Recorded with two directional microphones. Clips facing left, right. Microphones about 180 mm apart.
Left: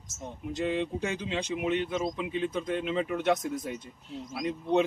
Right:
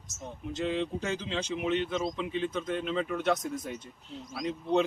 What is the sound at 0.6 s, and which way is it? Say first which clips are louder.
Speech: left 1 dB; 10° left (ahead or behind).